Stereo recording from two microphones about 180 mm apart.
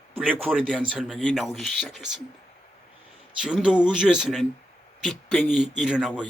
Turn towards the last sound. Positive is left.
turn(degrees=-5)  # may be behind; listen again after turning